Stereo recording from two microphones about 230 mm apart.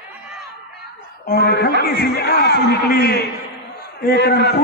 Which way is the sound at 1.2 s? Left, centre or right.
Left.